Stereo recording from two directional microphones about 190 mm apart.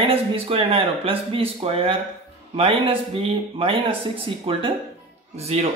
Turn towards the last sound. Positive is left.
turn(degrees=-35)  # may be behind; listen again after turning